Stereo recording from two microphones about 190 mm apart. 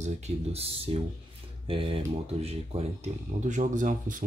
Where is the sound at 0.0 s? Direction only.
30° right (ahead or behind).